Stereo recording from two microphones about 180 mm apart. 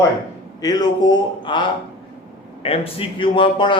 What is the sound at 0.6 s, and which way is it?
A man's voice, 20° left (ahead or behind).